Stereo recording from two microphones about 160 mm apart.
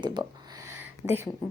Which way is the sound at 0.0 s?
30° right (ahead or behind).